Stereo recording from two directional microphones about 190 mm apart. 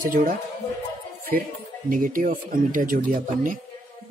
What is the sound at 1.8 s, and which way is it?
Speech, 45° right (ahead or behind).